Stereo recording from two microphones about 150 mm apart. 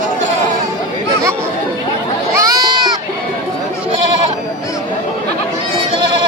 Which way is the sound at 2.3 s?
20° right (ahead or behind).